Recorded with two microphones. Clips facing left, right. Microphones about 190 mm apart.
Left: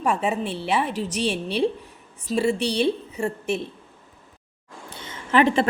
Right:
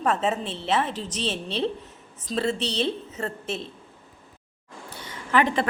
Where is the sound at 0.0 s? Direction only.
10° left (ahead or behind).